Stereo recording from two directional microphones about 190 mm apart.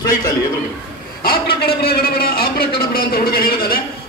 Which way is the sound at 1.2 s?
55° left (ahead or behind).